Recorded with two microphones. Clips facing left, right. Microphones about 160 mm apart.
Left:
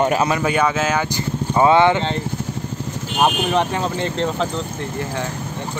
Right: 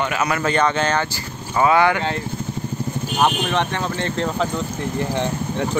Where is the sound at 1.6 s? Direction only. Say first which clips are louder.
Left 2 dB; 25° left (ahead or behind).